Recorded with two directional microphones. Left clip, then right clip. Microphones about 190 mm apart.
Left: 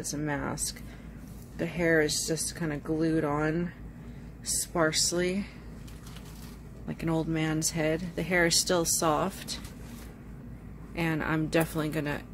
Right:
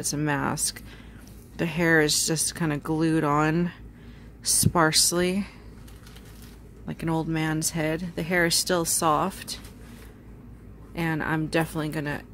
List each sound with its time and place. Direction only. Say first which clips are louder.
0.0 s speech: right 6 dB; 45° right (ahead or behind)
4.7 s a woman's voice: right 5 dB; 45° right (ahead or behind)
6.9 s speech: right 2 dB; 25° right (ahead or behind)
11.0 s speech: right 2 dB; 20° right (ahead or behind)